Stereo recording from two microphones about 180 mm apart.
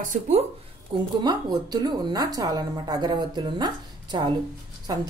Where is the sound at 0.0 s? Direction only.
40° right (ahead or behind).